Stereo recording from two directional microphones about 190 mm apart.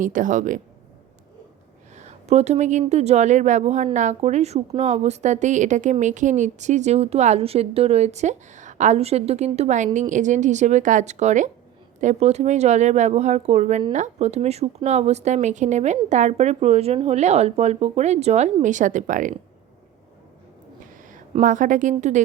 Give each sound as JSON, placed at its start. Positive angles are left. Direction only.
{"t": 0.0, "sound": "a woman's voice", "side_deg": -45}
{"t": 2.0, "sound": "speech", "side_deg": -35}
{"t": 21.4, "sound": "a woman's voice", "side_deg": -45}